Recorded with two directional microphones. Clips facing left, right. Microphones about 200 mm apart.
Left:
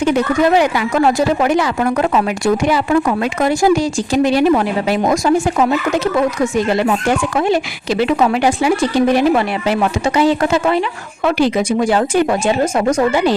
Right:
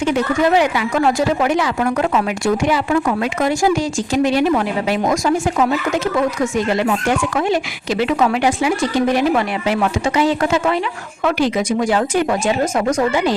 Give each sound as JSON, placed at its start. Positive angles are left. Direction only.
{"t": 1.0, "sound": "speech", "side_deg": 40}